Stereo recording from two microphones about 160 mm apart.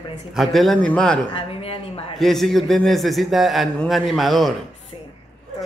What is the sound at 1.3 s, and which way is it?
Speech, 35° left (ahead or behind).